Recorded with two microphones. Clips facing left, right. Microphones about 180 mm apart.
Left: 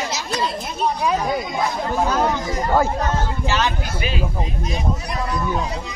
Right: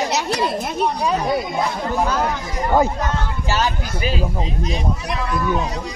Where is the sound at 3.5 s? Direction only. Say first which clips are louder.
Right 3 dB; 40° right (ahead or behind).